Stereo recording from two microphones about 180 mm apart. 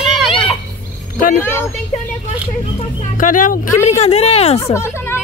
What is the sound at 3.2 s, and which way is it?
Speech, 45° left (ahead or behind).